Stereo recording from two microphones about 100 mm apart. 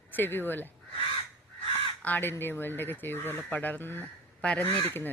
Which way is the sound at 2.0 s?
20° left (ahead or behind).